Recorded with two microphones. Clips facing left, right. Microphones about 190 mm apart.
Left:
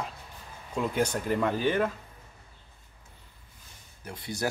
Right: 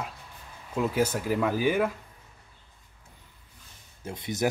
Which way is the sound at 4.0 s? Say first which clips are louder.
Right 4 dB; 25° right (ahead or behind).